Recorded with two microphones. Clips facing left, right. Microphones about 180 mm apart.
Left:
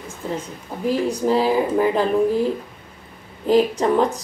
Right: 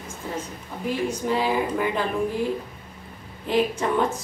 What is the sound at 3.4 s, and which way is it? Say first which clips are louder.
Speech: left 6 dB; 35° left (ahead or behind).